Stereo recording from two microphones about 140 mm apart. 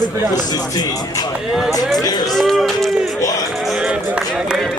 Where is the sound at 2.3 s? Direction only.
Centre (ahead or behind).